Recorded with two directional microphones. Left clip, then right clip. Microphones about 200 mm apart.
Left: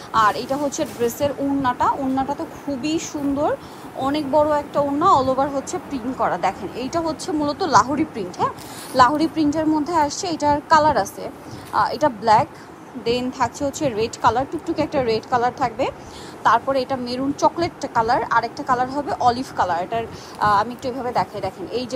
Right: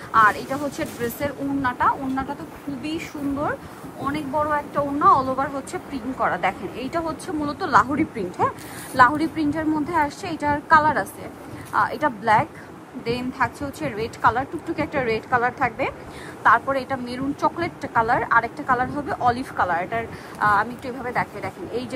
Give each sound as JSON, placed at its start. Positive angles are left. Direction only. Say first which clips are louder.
{"t": 0.1, "sound": "a woman's voice", "louder": "even", "side_deg": 20}
{"t": 4.1, "sound": "a woman's voice", "louder": "left 5 dB", "side_deg": 20}
{"t": 13.6, "sound": "speech", "louder": "left 7 dB", "side_deg": 45}
{"t": 14.2, "sound": "a woman's voice", "louder": "even", "side_deg": 20}